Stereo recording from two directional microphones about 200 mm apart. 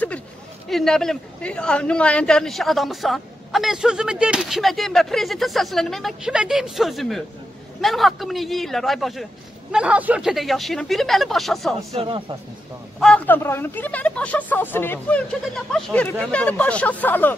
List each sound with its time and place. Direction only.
0.7 s a man's voice: centre (ahead or behind)
11.9 s speech: 25° right (ahead or behind)
13.0 s speech: 5° left (ahead or behind)